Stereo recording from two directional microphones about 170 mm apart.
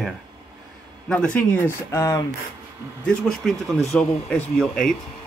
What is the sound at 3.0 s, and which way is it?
Speech, centre (ahead or behind).